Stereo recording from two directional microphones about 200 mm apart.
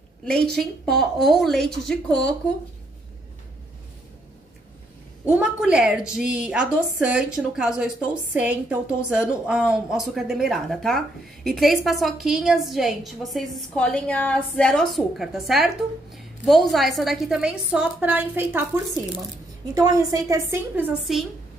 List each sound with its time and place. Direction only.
0.6 s a woman's voice: centre (ahead or behind)
5.3 s a woman's voice: 5° right (ahead or behind)
19.7 s a woman's voice: 20° right (ahead or behind)